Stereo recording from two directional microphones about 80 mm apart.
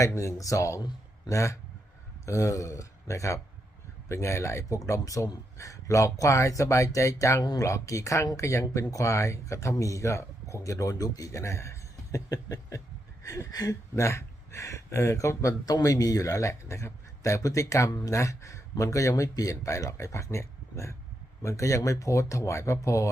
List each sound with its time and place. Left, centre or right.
0.0 s speech: left
13.2 s a sound: left
13.9 s speech: left